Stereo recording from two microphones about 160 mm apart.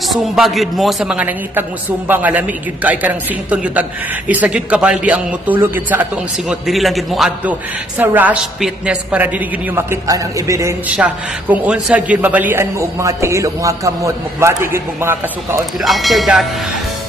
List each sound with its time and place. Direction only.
0.1 s a man's voice: centre (ahead or behind)
6.5 s a man's voice: centre (ahead or behind)
9.8 s a man's voice: 20° right (ahead or behind)
15.8 s a man's voice: centre (ahead or behind)